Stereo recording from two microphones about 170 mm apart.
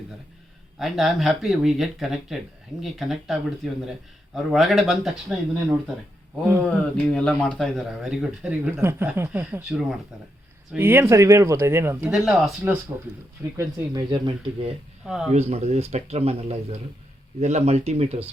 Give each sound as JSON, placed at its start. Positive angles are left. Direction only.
{"t": 0.8, "sound": "speech", "side_deg": 0}
{"t": 6.6, "sound": "speech", "side_deg": 5}
{"t": 12.1, "sound": "speech", "side_deg": 0}
{"t": 12.6, "sound": "speech", "side_deg": -15}
{"t": 15.0, "sound": "speech", "side_deg": -5}
{"t": 15.3, "sound": "speech", "side_deg": -40}